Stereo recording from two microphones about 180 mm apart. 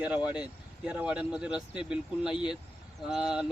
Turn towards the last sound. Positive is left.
turn(degrees=-5)  # may be behind; listen again after turning